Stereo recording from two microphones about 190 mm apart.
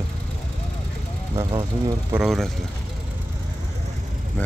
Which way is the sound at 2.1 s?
Centre (ahead or behind).